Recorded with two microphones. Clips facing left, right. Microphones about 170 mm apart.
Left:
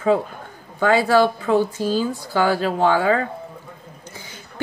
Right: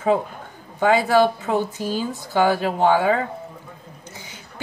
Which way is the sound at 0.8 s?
20° right (ahead or behind).